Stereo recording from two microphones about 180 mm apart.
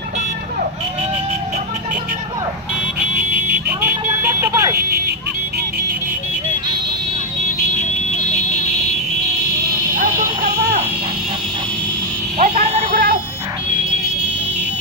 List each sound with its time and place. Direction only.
3.8 s vehicle: 10° right (ahead or behind)
4.7 s speech: 60° right (ahead or behind)
9.9 s music: 60° right (ahead or behind)
12.4 s a sound: 35° right (ahead or behind)
12.9 s buzzer: 60° right (ahead or behind)